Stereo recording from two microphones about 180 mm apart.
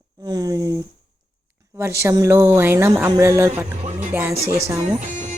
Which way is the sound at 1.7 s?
15° right (ahead or behind).